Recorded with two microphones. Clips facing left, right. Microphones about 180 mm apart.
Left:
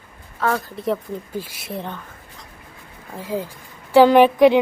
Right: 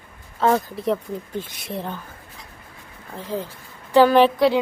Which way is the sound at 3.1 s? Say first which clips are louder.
Left 2 dB; 10° left (ahead or behind).